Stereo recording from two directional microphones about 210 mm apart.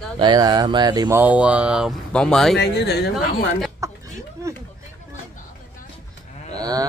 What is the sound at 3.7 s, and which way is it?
Chicken, 15° right (ahead or behind).